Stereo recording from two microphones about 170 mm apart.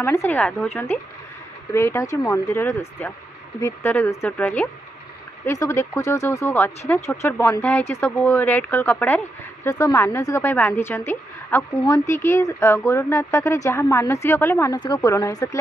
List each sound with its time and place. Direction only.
0.0 s speech: 15° left (ahead or behind)